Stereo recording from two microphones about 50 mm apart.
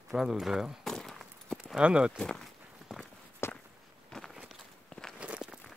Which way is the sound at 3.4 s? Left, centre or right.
Left.